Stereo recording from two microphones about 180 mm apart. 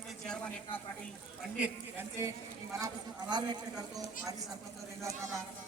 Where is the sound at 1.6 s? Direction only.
10° right (ahead or behind).